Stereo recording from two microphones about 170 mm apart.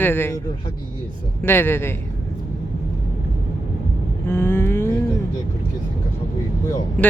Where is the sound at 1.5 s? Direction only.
15° left (ahead or behind).